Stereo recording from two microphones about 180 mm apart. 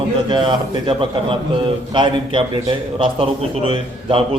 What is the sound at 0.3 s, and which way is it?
A man's voice, 25° right (ahead or behind).